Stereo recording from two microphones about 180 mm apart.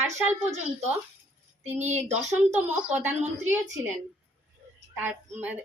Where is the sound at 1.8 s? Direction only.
10° right (ahead or behind).